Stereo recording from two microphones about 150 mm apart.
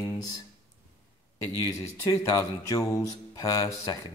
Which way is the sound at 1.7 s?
25° left (ahead or behind).